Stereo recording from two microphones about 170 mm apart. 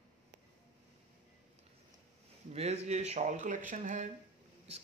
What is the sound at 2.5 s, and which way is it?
Speech, 35° right (ahead or behind).